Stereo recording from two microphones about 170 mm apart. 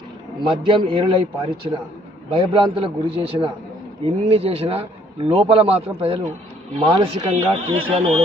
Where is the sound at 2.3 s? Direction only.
30° right (ahead or behind).